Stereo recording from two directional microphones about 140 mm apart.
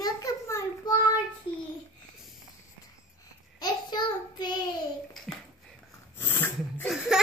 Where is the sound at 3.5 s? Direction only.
30° left (ahead or behind).